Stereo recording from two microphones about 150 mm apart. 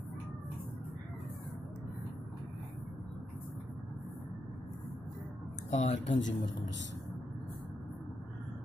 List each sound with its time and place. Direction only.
5.7 s speech: 50° left (ahead or behind)